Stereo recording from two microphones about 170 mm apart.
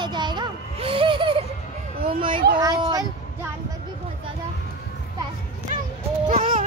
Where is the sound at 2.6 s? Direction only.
20° right (ahead or behind).